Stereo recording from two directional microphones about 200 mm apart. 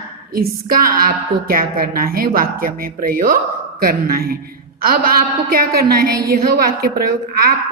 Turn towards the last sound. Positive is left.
turn(degrees=-50)  # may be behind; listen again after turning